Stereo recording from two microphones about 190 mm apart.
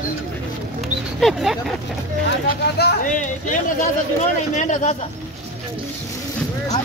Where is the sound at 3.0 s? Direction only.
40° left (ahead or behind).